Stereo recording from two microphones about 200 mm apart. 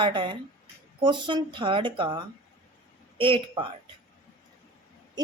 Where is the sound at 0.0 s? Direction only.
25° right (ahead or behind).